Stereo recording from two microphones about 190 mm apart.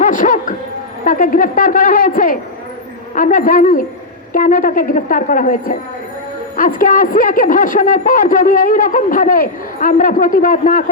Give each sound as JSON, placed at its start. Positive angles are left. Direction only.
{"t": 0.0, "sound": "a woman's voice", "side_deg": 45}